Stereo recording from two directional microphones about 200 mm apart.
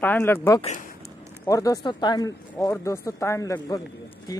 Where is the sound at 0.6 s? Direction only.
35° left (ahead or behind).